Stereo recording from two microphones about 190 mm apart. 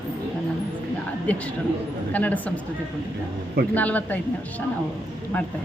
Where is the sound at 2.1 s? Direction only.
10° left (ahead or behind).